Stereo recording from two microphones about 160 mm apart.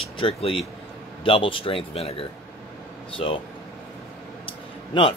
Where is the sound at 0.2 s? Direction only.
35° left (ahead or behind).